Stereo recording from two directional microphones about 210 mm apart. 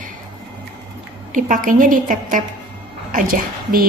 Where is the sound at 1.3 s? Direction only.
40° right (ahead or behind).